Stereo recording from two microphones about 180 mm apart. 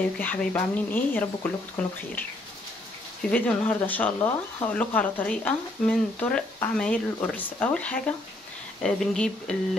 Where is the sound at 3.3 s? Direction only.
10° left (ahead or behind).